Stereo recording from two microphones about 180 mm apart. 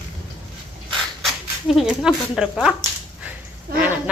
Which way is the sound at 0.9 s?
Centre (ahead or behind).